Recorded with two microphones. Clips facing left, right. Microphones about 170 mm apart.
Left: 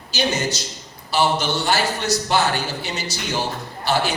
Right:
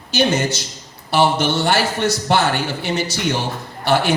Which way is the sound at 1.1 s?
55° right (ahead or behind).